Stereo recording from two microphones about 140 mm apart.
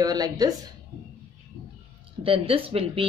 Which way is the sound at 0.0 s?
25° right (ahead or behind).